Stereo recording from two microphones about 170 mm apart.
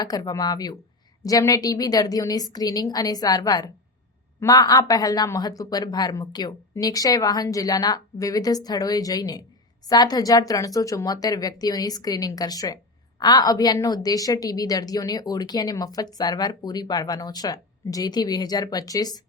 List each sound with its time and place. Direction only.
0.0 s speech: 20° left (ahead or behind)